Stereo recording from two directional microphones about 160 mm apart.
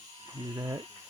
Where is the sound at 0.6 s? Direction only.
20° right (ahead or behind).